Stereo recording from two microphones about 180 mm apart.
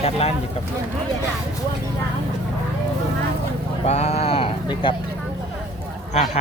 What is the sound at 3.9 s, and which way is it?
Speech, 35° left (ahead or behind).